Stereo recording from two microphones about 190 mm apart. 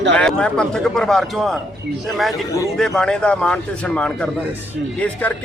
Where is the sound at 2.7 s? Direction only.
5° left (ahead or behind).